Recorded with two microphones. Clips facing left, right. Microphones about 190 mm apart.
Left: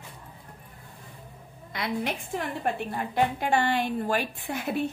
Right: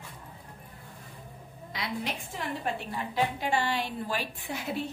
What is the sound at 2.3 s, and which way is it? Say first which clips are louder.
A woman's voice: left 4 dB; 55° left (ahead or behind).